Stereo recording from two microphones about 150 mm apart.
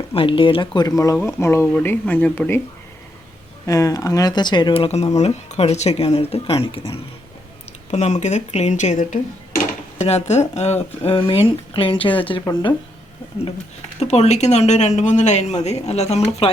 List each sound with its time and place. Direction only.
0.1 s speech: 35° left (ahead or behind); by 2.6 s 10° left (ahead or behind)
3.7 s speech: 25° left (ahead or behind); by 6.7 s 40° left (ahead or behind)
7.9 s speech: 45° left (ahead or behind)
14.0 s speech: 45° left (ahead or behind)